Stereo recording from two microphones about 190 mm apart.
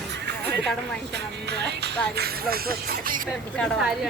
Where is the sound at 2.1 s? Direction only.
55° right (ahead or behind).